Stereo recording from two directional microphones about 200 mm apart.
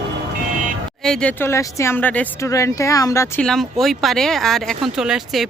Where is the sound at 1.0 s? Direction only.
5° left (ahead or behind).